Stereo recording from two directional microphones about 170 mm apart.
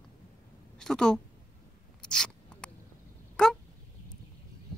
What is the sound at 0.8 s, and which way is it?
Speech, 5° left (ahead or behind).